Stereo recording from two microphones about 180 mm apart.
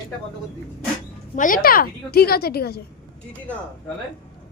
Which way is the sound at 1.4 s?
50° left (ahead or behind).